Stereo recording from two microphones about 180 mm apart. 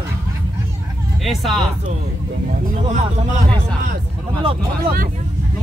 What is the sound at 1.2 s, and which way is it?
Speech, centre (ahead or behind).